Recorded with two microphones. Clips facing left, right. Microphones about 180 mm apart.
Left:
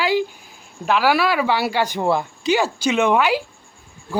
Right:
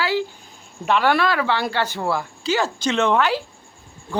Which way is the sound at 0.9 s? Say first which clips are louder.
Left 1 dB; 5° left (ahead or behind).